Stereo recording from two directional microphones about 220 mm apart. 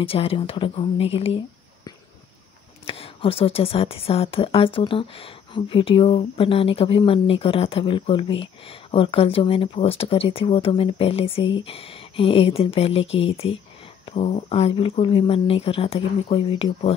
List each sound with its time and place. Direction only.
0.0 s speech: 25° left (ahead or behind)
2.8 s speech: 25° left (ahead or behind)